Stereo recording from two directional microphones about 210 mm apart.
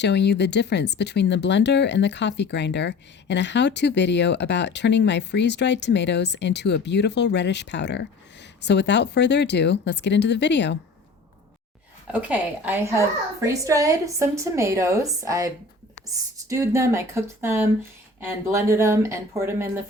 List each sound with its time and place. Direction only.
0.0 s speech: 55° left (ahead or behind)
12.3 s a woman's voice: 10° right (ahead or behind)
16.5 s a woman's voice: 15° right (ahead or behind)